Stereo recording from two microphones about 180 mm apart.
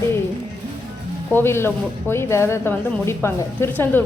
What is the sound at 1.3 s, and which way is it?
A woman's voice, 15° left (ahead or behind).